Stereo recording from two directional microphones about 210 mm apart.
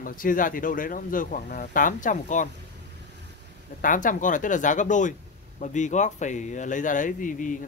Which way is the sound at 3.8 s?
40° left (ahead or behind).